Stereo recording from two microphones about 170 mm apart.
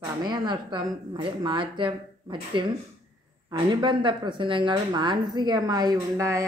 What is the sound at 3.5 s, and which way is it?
Speech, 30° right (ahead or behind).